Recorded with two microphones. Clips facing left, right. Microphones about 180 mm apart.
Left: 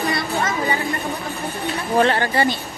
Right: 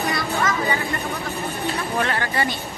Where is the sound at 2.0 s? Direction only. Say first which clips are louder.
Left 7 dB; 30° left (ahead or behind).